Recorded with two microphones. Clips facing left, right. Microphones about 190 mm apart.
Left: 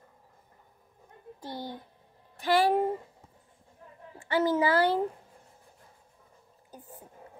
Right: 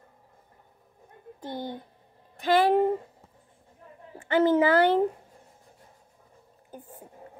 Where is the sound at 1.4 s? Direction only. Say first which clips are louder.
Right 4 dB; 20° right (ahead or behind).